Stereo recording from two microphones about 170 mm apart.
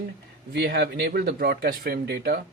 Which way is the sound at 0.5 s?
75° right (ahead or behind).